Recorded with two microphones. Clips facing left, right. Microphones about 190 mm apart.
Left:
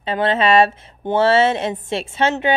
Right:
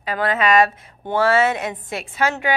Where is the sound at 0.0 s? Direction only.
25° left (ahead or behind).